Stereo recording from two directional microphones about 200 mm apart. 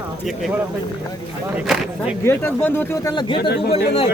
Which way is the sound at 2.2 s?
10° left (ahead or behind).